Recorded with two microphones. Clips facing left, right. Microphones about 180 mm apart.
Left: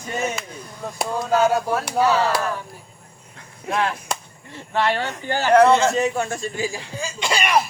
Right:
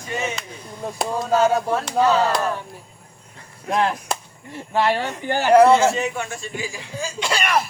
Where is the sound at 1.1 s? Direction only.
Centre (ahead or behind).